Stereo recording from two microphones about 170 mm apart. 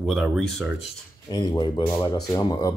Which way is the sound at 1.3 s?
25° left (ahead or behind).